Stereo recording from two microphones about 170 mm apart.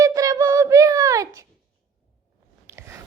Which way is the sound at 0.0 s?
20° right (ahead or behind).